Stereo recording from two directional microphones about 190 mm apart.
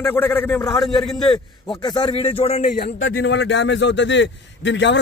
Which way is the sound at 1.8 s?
20° left (ahead or behind).